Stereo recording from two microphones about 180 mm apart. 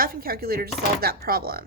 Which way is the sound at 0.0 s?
55° right (ahead or behind).